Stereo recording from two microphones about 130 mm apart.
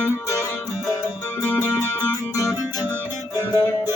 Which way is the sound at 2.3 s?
25° left (ahead or behind).